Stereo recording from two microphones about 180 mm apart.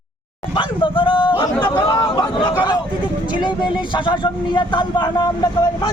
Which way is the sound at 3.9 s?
25° left (ahead or behind).